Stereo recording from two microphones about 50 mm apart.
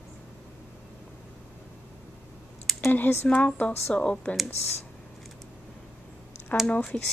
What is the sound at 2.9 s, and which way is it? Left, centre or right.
Speech, left.